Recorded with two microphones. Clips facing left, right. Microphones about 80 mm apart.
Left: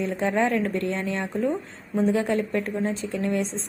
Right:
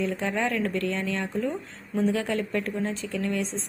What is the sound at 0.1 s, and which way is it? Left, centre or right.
A woman's voice, centre.